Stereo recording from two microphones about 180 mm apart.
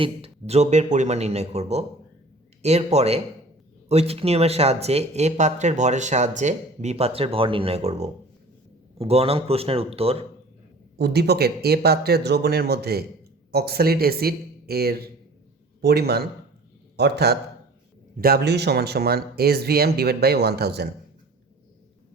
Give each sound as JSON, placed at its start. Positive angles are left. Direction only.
{"t": 0.0, "sound": "speech", "side_deg": -35}
{"t": 10.9, "sound": "speech", "side_deg": -65}